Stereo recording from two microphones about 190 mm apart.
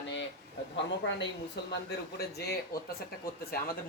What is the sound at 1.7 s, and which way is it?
A woman's voice, 55° left (ahead or behind).